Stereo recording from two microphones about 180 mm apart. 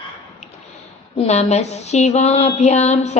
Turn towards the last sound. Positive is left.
turn(degrees=40)  # may be behind; listen again after turning